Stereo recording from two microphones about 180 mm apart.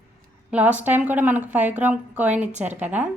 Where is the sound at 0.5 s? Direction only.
10° right (ahead or behind).